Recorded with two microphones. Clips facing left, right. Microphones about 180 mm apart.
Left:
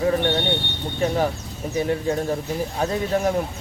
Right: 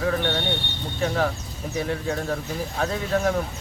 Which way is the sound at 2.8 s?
20° left (ahead or behind).